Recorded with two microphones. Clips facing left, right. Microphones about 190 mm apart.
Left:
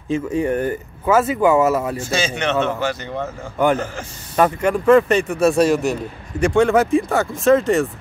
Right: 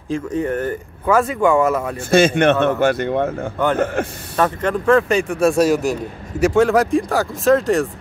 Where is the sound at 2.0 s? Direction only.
55° right (ahead or behind).